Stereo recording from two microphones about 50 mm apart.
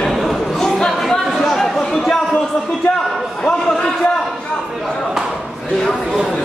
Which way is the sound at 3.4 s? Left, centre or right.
Centre.